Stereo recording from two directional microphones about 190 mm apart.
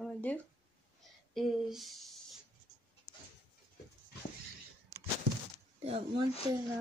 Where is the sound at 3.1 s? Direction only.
20° left (ahead or behind).